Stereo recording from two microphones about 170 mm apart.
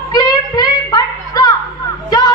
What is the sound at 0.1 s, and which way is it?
Child singing, 25° left (ahead or behind).